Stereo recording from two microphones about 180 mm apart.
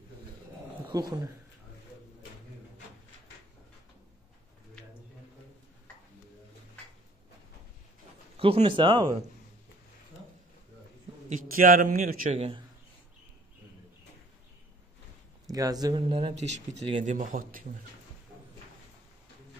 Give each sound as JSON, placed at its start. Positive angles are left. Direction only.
{"t": 0.8, "sound": "speech", "side_deg": -20}
{"t": 8.4, "sound": "speech", "side_deg": -30}
{"t": 11.2, "sound": "a man's voice", "side_deg": -50}
{"t": 12.4, "sound": "speech", "side_deg": -30}
{"t": 15.5, "sound": "speech", "side_deg": -20}
{"t": 16.1, "sound": "speech", "side_deg": -30}